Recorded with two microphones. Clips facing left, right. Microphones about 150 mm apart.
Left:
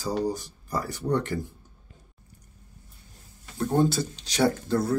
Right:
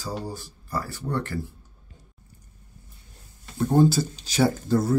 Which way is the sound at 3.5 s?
Centre (ahead or behind).